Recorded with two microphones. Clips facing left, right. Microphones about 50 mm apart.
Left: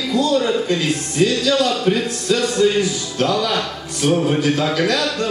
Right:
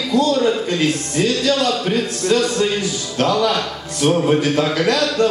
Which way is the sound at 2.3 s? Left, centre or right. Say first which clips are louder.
Left 2 dB; right.